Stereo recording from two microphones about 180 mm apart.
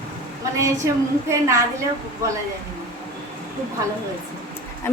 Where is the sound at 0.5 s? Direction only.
15° right (ahead or behind).